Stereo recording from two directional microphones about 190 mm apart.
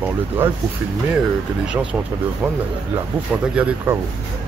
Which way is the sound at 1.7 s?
5° right (ahead or behind).